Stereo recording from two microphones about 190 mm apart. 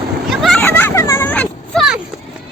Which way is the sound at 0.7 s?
10° left (ahead or behind).